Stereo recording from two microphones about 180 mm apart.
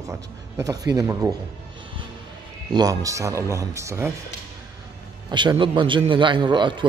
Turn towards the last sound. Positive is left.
turn(degrees=-25)  # may be behind; listen again after turning